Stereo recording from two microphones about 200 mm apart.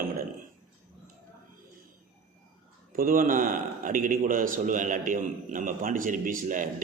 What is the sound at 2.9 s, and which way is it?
A man's voice, 45° right (ahead or behind).